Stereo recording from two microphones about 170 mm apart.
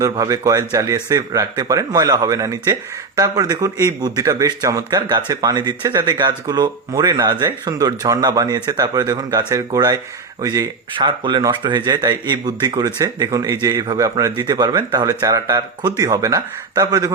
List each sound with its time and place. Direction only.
0.0 s speech: 20° right (ahead or behind)